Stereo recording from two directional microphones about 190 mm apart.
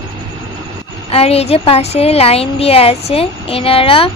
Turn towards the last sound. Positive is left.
turn(degrees=30)  # may be behind; listen again after turning